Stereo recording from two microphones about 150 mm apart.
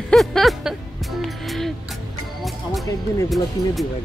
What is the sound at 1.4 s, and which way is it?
Music, centre (ahead or behind).